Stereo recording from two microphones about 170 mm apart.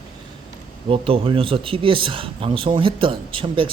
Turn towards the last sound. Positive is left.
turn(degrees=-30)  # may be behind; listen again after turning